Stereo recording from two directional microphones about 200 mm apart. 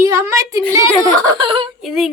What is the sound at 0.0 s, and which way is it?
A woman's voice, 15° right (ahead or behind).